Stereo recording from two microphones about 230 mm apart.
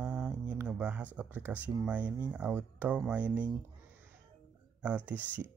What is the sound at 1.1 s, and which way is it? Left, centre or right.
Speech, centre.